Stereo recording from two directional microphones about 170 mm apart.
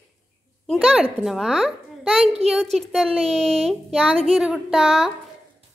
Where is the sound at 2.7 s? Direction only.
Centre (ahead or behind).